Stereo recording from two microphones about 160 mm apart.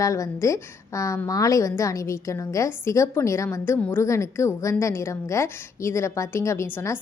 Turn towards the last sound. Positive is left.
turn(degrees=15)  # may be behind; listen again after turning